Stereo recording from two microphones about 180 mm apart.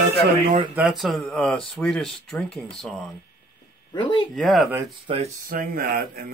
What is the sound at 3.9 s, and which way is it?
Speech, 25° left (ahead or behind).